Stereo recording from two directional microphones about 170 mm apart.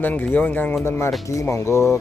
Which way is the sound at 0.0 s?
10° left (ahead or behind).